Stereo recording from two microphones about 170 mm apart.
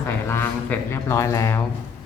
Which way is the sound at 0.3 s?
15° left (ahead or behind).